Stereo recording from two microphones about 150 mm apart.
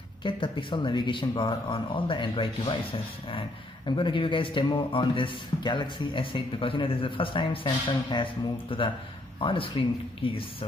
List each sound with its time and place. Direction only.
0.2 s speech: 35° left (ahead or behind)